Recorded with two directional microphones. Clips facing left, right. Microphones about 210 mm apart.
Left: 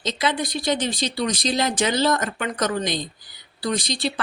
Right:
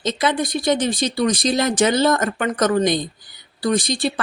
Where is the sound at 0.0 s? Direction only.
50° right (ahead or behind).